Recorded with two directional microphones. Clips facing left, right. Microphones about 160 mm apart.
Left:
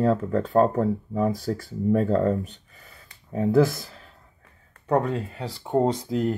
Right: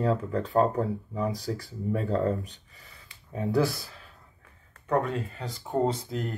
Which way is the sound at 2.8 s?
40° left (ahead or behind).